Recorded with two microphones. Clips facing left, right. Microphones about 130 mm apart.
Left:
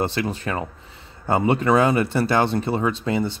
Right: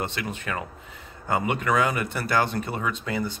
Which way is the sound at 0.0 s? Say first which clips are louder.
Left 7 dB; 35° left (ahead or behind).